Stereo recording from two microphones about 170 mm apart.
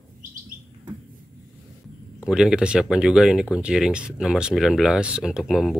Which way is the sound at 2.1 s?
5° right (ahead or behind).